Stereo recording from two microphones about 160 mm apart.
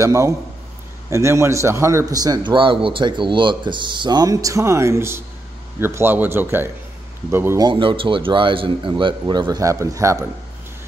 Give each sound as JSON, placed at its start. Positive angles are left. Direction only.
{"t": 0.0, "sound": "a man's voice", "side_deg": -20}
{"t": 7.6, "sound": "speech", "side_deg": -35}